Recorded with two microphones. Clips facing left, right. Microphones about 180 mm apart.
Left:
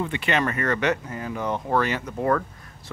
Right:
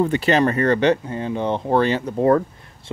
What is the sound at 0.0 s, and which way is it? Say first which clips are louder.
Speech: right 7 dB; 35° right (ahead or behind).